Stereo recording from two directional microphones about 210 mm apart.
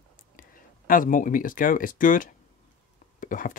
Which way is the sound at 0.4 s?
40° left (ahead or behind).